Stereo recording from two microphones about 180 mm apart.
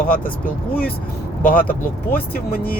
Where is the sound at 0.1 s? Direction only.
55° left (ahead or behind).